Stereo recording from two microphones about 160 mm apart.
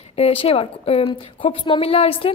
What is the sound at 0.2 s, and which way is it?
A woman's voice, 40° left (ahead or behind).